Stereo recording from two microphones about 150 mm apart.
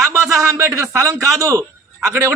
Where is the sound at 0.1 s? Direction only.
15° right (ahead or behind).